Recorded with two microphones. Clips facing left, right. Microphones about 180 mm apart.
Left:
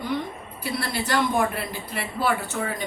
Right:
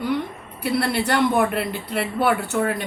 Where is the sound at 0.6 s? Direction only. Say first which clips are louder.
Right 7 dB; 65° right (ahead or behind).